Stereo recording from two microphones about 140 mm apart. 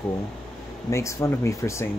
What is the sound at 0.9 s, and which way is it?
Speech, 20° left (ahead or behind).